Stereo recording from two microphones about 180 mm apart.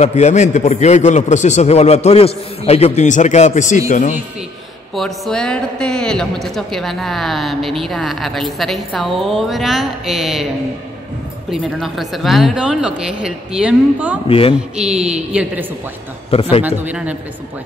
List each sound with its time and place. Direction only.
0.0 s a man's voice: 40° left (ahead or behind)
4.9 s a man's voice: centre (ahead or behind)
11.5 s a man's voice: centre (ahead or behind)
14.2 s a man's voice: 30° left (ahead or behind)
14.5 s a man's voice: 5° right (ahead or behind)
16.3 s a man's voice: 35° left (ahead or behind)
16.6 s a man's voice: 10° right (ahead or behind)